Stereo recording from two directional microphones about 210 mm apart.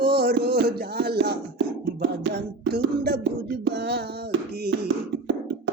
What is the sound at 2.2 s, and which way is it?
Music, 50° right (ahead or behind).